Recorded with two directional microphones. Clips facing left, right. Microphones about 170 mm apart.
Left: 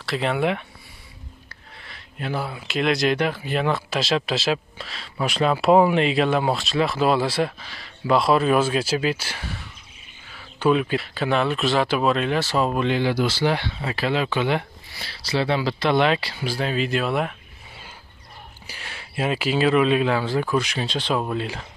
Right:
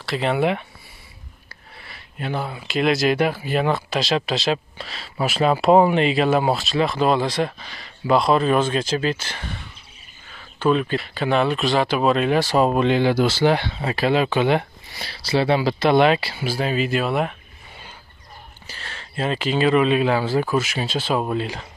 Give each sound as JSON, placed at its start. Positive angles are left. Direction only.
{"t": 0.0, "sound": "speech", "side_deg": 0}
{"t": 1.9, "sound": "speech", "side_deg": 0}
{"t": 13.3, "sound": "speech", "side_deg": -50}
{"t": 14.0, "sound": "speech", "side_deg": -15}
{"t": 18.7, "sound": "speech", "side_deg": 10}